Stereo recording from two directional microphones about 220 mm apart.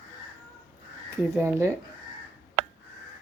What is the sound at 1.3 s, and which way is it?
Speech, 10° right (ahead or behind).